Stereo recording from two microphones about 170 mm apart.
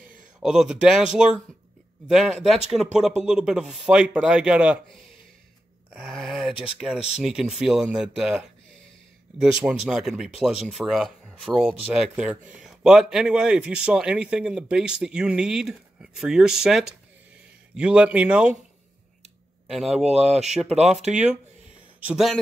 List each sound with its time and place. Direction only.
0.4 s a man's voice: centre (ahead or behind)
5.9 s a man's voice: centre (ahead or behind)
20.1 s speech: 40° right (ahead or behind)
21.1 s a man's voice: 5° right (ahead or behind)